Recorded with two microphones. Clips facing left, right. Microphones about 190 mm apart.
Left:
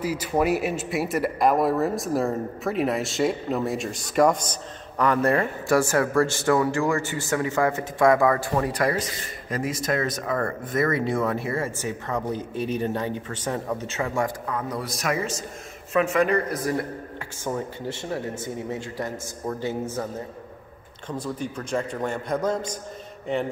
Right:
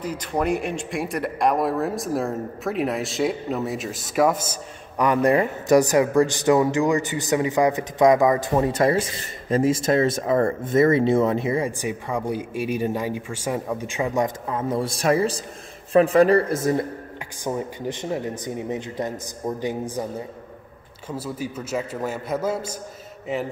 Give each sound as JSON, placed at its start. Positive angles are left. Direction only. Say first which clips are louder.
{"t": 0.0, "sound": "a man's voice", "louder": "left 1 dB", "side_deg": 5}